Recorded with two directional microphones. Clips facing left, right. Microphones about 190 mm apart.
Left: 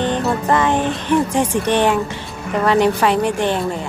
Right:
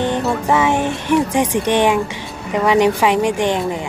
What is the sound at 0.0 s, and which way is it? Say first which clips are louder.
Speech: even; 10° right (ahead or behind).